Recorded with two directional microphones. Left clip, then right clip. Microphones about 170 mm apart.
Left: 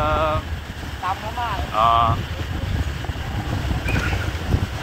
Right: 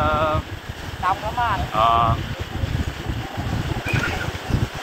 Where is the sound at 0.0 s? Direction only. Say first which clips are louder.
Even; 15° left (ahead or behind).